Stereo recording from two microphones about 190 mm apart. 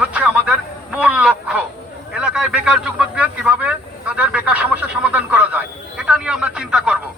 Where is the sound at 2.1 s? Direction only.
5° right (ahead or behind).